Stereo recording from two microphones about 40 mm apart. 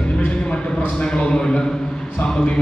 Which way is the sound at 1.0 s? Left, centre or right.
Centre.